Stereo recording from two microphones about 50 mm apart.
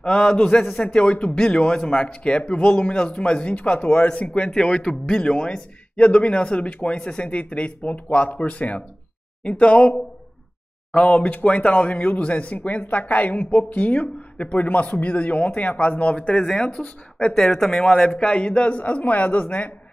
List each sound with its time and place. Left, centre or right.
0.0 s a man's voice: left
16.3 s speech: centre
17.3 s a man's voice: centre; by 19.4 s left